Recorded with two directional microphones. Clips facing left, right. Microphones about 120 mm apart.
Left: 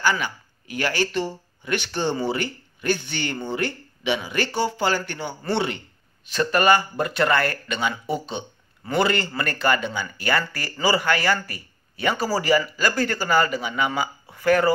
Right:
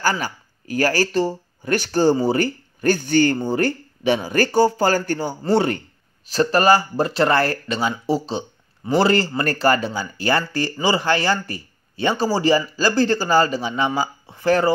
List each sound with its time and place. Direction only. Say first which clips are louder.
0.0 s speech: right 1 dB; 40° right (ahead or behind)